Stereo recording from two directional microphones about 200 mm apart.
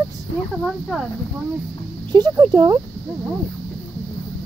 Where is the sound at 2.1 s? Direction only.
20° right (ahead or behind).